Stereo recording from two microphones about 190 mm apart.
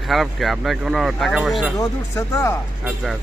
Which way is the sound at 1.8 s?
15° left (ahead or behind).